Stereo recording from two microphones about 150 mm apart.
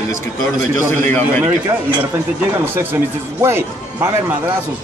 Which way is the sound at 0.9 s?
15° left (ahead or behind).